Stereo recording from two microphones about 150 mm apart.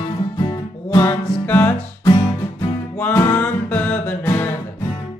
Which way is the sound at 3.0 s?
15° left (ahead or behind).